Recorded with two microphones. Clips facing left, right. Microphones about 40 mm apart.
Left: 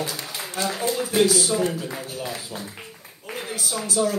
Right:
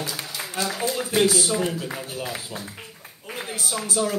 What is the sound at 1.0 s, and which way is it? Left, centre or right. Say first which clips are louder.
Speech: left 1 dB; centre.